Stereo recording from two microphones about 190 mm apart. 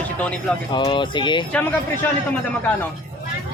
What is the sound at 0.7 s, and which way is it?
Speech, 25° left (ahead or behind).